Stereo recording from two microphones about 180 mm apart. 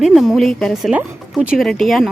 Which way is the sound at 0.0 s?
Centre (ahead or behind).